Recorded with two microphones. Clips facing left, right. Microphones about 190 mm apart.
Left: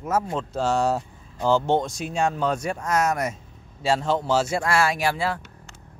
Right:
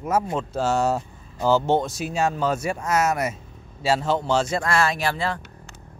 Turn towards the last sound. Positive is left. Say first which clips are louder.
# left 1 dB
turn(degrees=10)  # may be behind; listen again after turning